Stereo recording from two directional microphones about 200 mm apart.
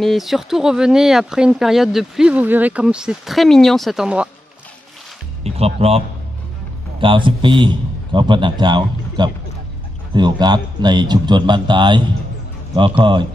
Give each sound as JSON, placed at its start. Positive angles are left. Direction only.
{"t": 0.0, "sound": "speech", "side_deg": 0}
{"t": 5.4, "sound": "a man's voice", "side_deg": -30}